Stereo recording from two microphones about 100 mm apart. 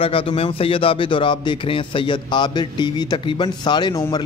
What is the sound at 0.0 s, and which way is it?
A man's voice, 65° left (ahead or behind).